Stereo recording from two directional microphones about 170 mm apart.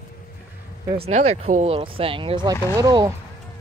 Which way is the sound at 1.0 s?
40° right (ahead or behind).